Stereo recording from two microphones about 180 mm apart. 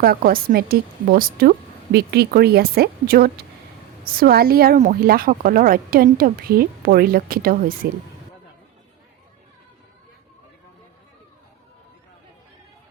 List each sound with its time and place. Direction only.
0.0 s a woman's voice: 55° right (ahead or behind)